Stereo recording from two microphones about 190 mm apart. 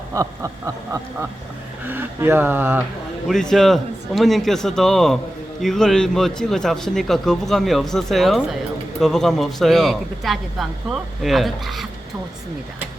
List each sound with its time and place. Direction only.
0.1 s speech: 15° right (ahead or behind)
1.8 s speech: 10° right (ahead or behind)
3.2 s speech: centre (ahead or behind)